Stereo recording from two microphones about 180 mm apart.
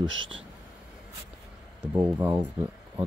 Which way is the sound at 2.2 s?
10° right (ahead or behind).